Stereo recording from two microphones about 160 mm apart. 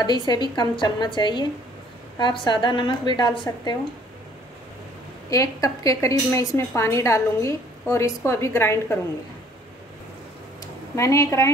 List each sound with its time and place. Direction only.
0.3 s a woman's voice: 30° left (ahead or behind)
5.3 s a woman's voice: 20° left (ahead or behind)
11.0 s a woman's voice: 20° left (ahead or behind)